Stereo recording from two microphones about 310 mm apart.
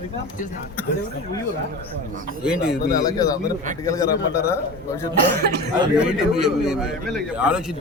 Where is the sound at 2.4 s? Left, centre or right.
Centre.